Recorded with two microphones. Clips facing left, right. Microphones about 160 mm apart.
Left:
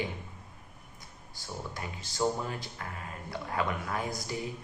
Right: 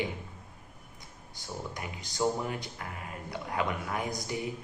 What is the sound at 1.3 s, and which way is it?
Speech, 20° right (ahead or behind).